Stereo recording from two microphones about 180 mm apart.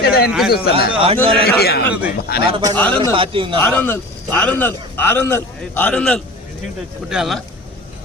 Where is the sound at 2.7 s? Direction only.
10° left (ahead or behind).